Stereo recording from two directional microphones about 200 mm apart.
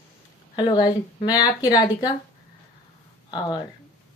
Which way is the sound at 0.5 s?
20° left (ahead or behind).